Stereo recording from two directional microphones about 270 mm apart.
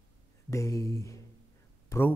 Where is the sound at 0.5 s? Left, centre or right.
Centre.